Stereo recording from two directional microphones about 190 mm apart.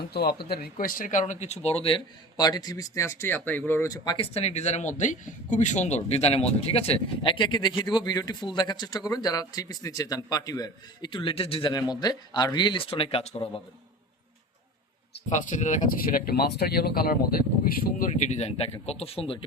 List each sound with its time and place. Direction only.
0.1 s a man's voice: 55° left (ahead or behind); by 13.6 s 30° left (ahead or behind)
15.3 s speech: 40° left (ahead or behind)
17.8 s speech: 40° left (ahead or behind)